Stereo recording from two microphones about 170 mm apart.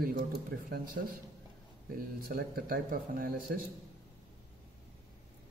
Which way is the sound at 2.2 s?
65° right (ahead or behind).